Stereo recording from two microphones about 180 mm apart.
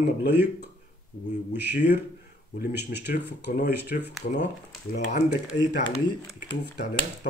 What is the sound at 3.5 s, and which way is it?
Speech, 55° left (ahead or behind).